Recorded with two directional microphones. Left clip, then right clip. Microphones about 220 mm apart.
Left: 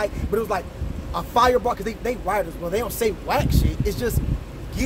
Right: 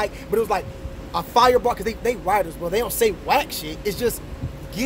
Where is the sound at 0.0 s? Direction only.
25° right (ahead or behind).